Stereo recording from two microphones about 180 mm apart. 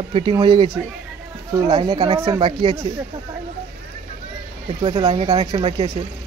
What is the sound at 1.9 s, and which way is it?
Speech, 25° right (ahead or behind).